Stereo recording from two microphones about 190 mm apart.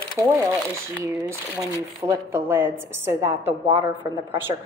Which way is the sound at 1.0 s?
15° right (ahead or behind).